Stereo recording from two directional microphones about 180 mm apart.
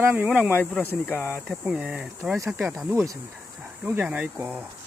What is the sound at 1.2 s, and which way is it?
Speech, 5° right (ahead or behind).